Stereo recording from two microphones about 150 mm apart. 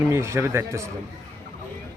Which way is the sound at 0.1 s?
20° right (ahead or behind).